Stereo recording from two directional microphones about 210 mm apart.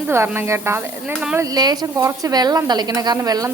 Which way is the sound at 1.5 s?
20° right (ahead or behind).